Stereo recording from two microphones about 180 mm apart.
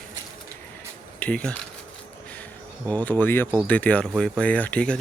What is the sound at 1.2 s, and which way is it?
Speech, 5° left (ahead or behind).